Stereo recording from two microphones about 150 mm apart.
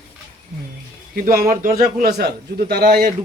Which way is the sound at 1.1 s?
75° right (ahead or behind).